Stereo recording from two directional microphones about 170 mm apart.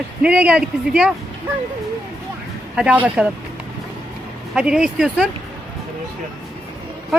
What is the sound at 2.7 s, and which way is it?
Speech, 5° right (ahead or behind).